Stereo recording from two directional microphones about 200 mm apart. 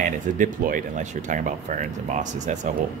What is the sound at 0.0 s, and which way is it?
A man's voice, 40° right (ahead or behind).